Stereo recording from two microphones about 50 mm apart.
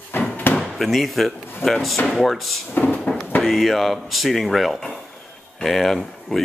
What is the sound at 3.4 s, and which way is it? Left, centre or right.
Speech, centre.